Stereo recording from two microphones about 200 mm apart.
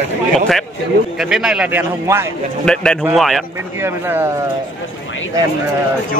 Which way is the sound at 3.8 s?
10° right (ahead or behind).